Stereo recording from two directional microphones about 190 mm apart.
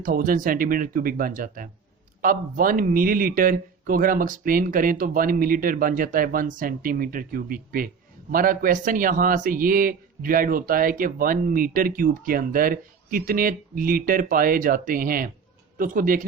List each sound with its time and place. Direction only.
0.0 s a man's voice: 45° right (ahead or behind)